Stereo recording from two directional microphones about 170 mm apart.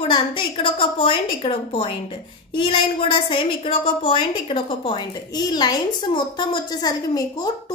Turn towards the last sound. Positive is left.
turn(degrees=20)  # may be behind; listen again after turning